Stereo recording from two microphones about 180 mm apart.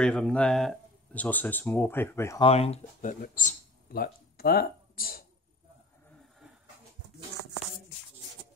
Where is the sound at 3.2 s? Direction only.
45° left (ahead or behind).